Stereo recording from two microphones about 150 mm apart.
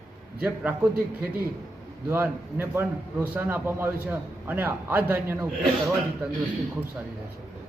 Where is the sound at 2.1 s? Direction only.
15° right (ahead or behind).